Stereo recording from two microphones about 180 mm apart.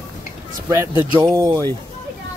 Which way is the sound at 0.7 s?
15° right (ahead or behind).